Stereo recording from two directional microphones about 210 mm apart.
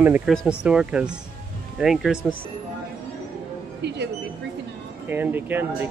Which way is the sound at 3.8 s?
55° right (ahead or behind).